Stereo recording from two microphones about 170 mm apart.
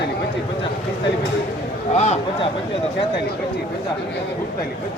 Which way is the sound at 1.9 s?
40° left (ahead or behind).